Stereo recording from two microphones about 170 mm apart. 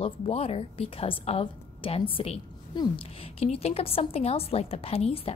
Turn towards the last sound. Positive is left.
turn(degrees=35)  # may be behind; listen again after turning